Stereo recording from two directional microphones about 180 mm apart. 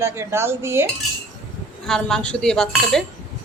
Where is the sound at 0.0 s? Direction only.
15° right (ahead or behind).